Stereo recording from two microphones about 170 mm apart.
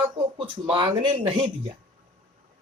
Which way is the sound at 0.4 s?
30° right (ahead or behind).